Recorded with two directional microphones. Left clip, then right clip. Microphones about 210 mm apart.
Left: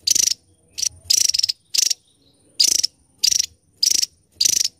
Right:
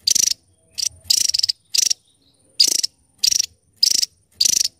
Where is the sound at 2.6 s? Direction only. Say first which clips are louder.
Right 1 dB; 15° right (ahead or behind).